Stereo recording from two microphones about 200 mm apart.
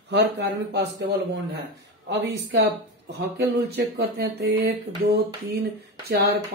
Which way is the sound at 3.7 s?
55° right (ahead or behind).